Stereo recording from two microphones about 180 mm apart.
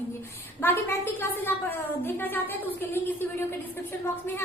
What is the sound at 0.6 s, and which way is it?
A woman's voice, 15° left (ahead or behind).